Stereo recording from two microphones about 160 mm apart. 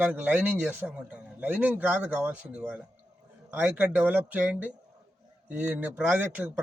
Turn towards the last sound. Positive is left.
turn(degrees=-10)  # may be behind; listen again after turning